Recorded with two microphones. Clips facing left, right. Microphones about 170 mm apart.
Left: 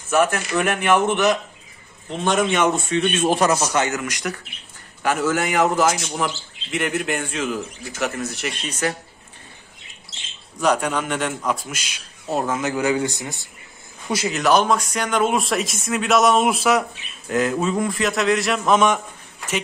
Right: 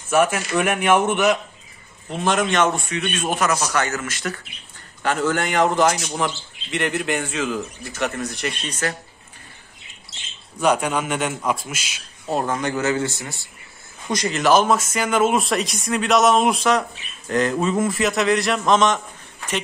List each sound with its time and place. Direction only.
0.1 s speech: 10° right (ahead or behind)
2.7 s a man's voice: 25° left (ahead or behind); by 8.9 s 10° left (ahead or behind)
10.6 s speech: 10° right (ahead or behind)
12.3 s speech: 5° left (ahead or behind); by 13.5 s 20° left (ahead or behind)
14.0 s speech: 5° left (ahead or behind)